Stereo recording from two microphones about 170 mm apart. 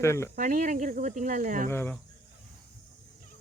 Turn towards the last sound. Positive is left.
turn(degrees=15)  # may be behind; listen again after turning